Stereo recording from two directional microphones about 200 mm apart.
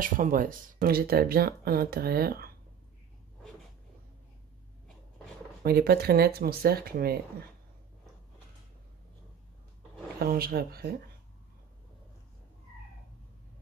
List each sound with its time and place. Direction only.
0.0 s speech: 45° right (ahead or behind)
5.6 s speech: 50° right (ahead or behind)
10.1 s speech: 50° right (ahead or behind)